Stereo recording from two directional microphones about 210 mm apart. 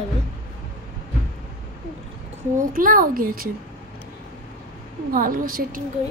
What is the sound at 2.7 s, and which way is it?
Speech, 40° right (ahead or behind).